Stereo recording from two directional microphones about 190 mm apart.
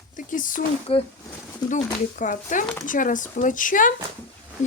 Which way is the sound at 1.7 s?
40° left (ahead or behind).